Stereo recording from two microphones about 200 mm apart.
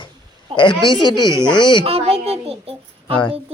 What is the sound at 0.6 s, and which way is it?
Speech, 25° left (ahead or behind).